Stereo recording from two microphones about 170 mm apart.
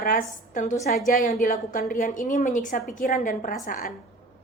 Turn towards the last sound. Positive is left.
turn(degrees=55)  # may be behind; listen again after turning